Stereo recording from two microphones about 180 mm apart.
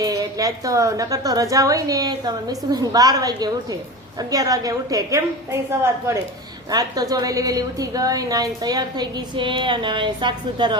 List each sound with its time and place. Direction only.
0.0 s a woman's voice: 20° right (ahead or behind)